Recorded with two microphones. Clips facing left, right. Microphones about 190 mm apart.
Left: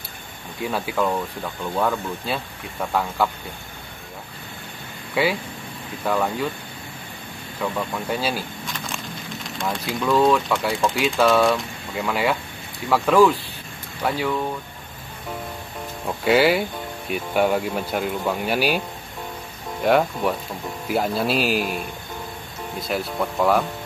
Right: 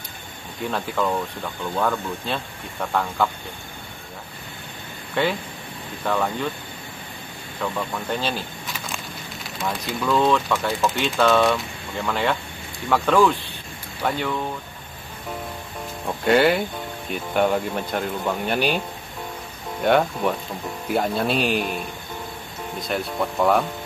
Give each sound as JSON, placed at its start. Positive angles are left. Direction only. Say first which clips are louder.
{"t": 0.7, "sound": "speech", "louder": "left 1 dB", "side_deg": 5}
{"t": 5.1, "sound": "speech", "louder": "left 1 dB", "side_deg": 10}
{"t": 7.6, "sound": "speech", "louder": "left 1 dB", "side_deg": 5}
{"t": 8.7, "sound": "a sound", "louder": "left 1 dB", "side_deg": -5}
{"t": 10.1, "sound": "speech", "louder": "left 2 dB", "side_deg": 5}
{"t": 16.3, "sound": "speech", "louder": "even", "side_deg": 5}
{"t": 19.8, "sound": "speech", "louder": "even", "side_deg": 0}